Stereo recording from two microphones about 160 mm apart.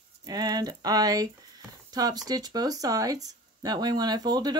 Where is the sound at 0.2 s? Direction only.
25° right (ahead or behind).